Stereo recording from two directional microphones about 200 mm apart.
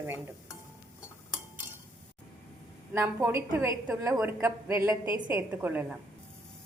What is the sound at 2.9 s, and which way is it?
A woman's voice, 10° right (ahead or behind).